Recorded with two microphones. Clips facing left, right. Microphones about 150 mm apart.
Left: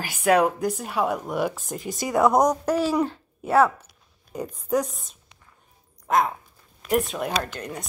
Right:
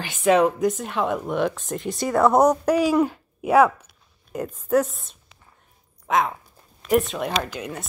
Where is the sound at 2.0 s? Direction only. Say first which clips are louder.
Right 1 dB; 15° left (ahead or behind).